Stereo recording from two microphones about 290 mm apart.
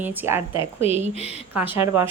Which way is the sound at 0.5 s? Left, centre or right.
Centre.